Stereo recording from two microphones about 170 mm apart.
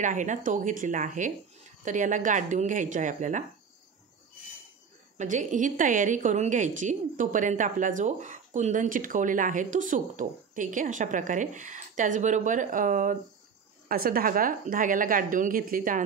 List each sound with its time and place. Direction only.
0.0 s a woman's voice: 45° right (ahead or behind)
5.1 s a woman's voice: 45° right (ahead or behind)